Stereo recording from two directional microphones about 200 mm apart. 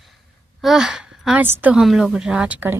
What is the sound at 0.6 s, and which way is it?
A woman's voice, centre (ahead or behind).